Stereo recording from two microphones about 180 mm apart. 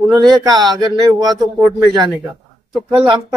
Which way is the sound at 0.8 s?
25° right (ahead or behind).